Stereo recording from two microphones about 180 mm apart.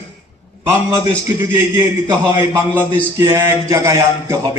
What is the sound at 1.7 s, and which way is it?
Speech, 20° right (ahead or behind).